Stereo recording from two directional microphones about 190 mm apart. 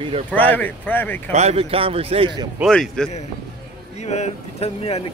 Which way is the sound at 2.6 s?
Centre (ahead or behind).